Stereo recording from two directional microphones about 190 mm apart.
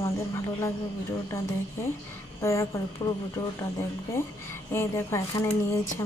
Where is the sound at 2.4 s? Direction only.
15° left (ahead or behind).